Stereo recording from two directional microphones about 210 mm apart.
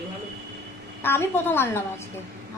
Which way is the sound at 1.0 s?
10° left (ahead or behind).